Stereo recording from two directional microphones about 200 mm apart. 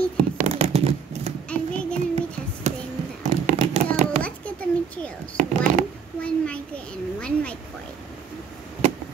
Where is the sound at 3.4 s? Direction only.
35° right (ahead or behind).